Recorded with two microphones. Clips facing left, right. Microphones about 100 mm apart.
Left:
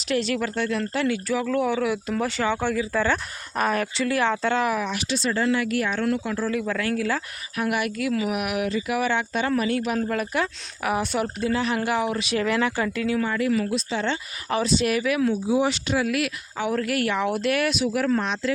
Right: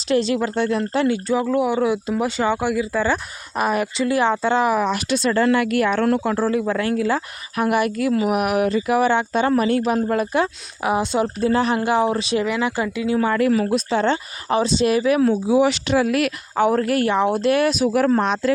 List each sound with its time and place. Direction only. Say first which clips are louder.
0.1 s speech: right 5 dB; 25° right (ahead or behind)
4.8 s speech: right 6 dB; 45° right (ahead or behind); by 7.2 s 25° right (ahead or behind)
7.5 s speech: right 6 dB; 35° right (ahead or behind)
11.3 s speech: right 6 dB; 40° right (ahead or behind)
12.6 s speech: right 2 dB; 15° right (ahead or behind)
13.2 s speech: right 5 dB; 55° right (ahead or behind)
14.4 s speech: right 4 dB; 25° right (ahead or behind)
15.4 s speech: right 5 dB; 90° right
16.0 s speech: right 5 dB; 45° right (ahead or behind)